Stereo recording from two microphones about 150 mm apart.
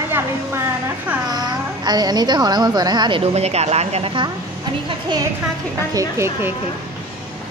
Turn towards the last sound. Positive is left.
turn(degrees=-20)  # may be behind; listen again after turning